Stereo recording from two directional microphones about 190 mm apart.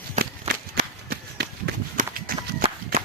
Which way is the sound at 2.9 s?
50° right (ahead or behind).